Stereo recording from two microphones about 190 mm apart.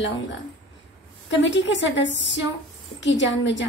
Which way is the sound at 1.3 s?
70° left (ahead or behind).